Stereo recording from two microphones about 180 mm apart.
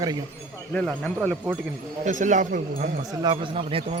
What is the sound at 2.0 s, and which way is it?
Speech, 45° right (ahead or behind).